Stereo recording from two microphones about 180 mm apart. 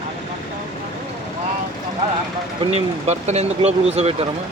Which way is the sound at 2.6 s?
35° right (ahead or behind).